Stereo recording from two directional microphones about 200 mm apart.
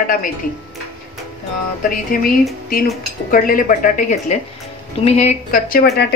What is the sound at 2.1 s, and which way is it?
A woman's voice, 45° left (ahead or behind).